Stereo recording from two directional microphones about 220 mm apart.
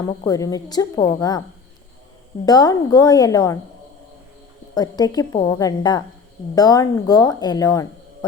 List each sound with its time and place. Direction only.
0.3 s a woman's voice: 15° left (ahead or behind)
2.5 s a woman's voice: 15° left (ahead or behind)
4.7 s a woman's voice: 15° left (ahead or behind)